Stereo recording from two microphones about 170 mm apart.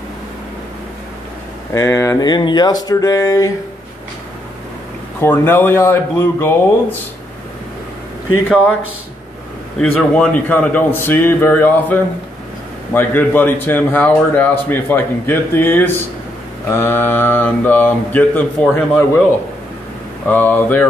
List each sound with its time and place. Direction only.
1.7 s speech: 15° left (ahead or behind)
5.2 s a man's voice: 10° left (ahead or behind)
10.1 s a man's voice: 5° left (ahead or behind)
20.2 s a man's voice: 10° left (ahead or behind)